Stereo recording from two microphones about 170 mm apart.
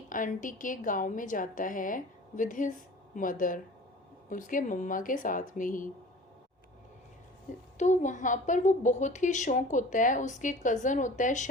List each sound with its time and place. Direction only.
0.1 s a woman's voice: 50° left (ahead or behind)
7.8 s a woman's voice: 45° left (ahead or behind)